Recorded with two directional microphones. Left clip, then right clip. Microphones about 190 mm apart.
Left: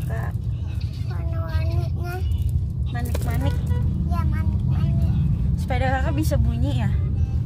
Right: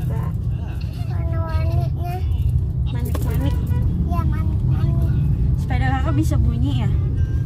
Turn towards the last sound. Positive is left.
turn(degrees=45)  # may be behind; listen again after turning